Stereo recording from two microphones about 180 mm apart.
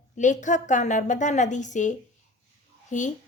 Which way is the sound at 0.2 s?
45° left (ahead or behind).